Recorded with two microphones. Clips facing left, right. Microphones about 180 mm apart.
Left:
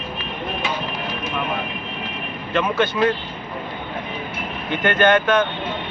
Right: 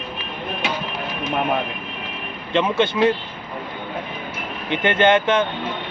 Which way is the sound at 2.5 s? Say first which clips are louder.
Right 1 dB; 25° right (ahead or behind).